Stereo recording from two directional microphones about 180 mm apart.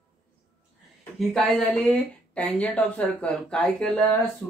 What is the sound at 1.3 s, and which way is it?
Speech, 5° left (ahead or behind).